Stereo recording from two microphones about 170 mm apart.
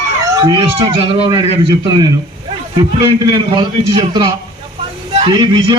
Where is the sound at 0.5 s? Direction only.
30° right (ahead or behind).